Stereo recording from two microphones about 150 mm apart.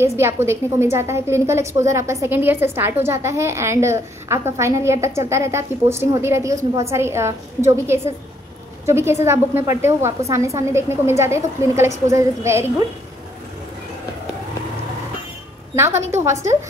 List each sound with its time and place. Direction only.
0.0 s a woman's voice: 15° right (ahead or behind)
15.7 s a woman's voice: 15° right (ahead or behind)